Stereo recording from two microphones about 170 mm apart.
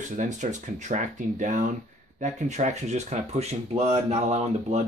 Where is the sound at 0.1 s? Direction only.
45° right (ahead or behind).